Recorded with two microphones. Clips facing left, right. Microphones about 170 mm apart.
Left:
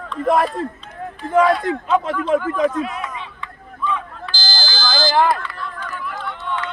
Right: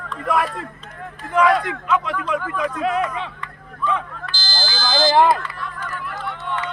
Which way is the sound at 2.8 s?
80° right.